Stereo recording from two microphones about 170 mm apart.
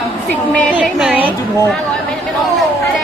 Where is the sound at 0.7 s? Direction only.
5° right (ahead or behind).